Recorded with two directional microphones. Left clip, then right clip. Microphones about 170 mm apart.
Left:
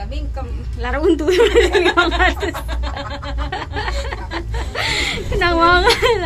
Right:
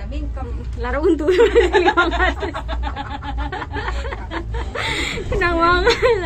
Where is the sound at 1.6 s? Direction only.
25° left (ahead or behind).